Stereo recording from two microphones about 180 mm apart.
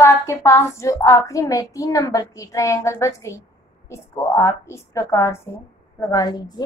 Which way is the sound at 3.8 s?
15° left (ahead or behind).